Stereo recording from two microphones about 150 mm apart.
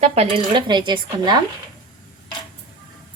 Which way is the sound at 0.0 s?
45° right (ahead or behind).